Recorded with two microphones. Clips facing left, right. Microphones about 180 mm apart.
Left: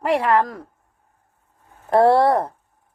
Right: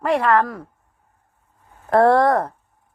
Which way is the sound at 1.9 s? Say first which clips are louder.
Even; 10° left (ahead or behind).